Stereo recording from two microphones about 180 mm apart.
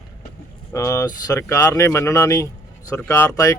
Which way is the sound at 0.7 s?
15° left (ahead or behind).